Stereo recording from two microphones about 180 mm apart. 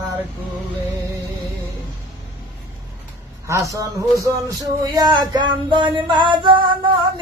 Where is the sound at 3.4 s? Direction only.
15° right (ahead or behind).